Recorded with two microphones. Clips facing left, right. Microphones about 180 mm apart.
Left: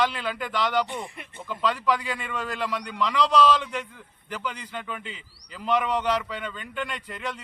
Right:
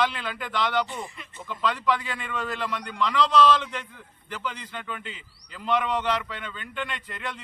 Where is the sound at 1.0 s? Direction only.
60° left (ahead or behind).